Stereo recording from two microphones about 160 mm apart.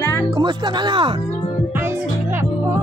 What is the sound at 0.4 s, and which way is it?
Music, 30° right (ahead or behind).